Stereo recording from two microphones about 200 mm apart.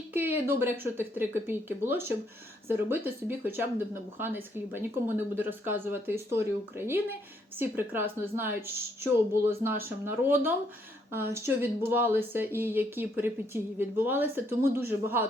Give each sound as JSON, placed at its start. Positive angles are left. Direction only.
{"t": 0.1, "sound": "speech", "side_deg": -10}